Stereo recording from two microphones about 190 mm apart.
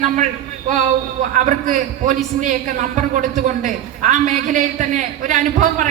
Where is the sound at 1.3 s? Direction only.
40° right (ahead or behind).